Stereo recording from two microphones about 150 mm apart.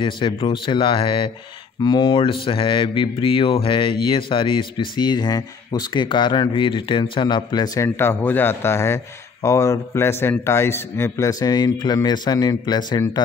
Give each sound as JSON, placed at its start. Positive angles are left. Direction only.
{"t": 0.0, "sound": "speech", "side_deg": 35}